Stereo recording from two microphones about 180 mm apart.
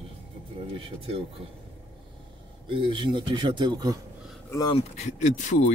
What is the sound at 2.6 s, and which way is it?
Speech, 25° right (ahead or behind).